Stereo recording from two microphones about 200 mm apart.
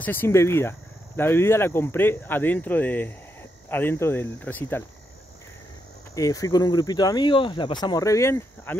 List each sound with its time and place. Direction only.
0.0 s speech: 10° left (ahead or behind)
6.1 s speech: 15° left (ahead or behind)